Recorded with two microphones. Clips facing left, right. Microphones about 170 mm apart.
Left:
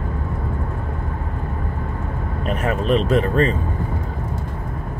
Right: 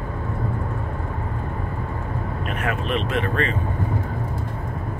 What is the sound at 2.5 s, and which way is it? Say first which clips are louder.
Speech: left 7 dB; 35° left (ahead or behind).